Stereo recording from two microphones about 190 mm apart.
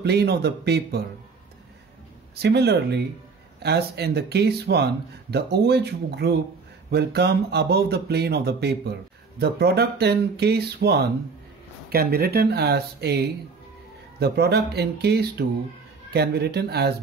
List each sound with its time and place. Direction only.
0.0 s speech: 60° right (ahead or behind)
2.3 s speech: 60° right (ahead or behind)
14.2 s speech: 60° right (ahead or behind)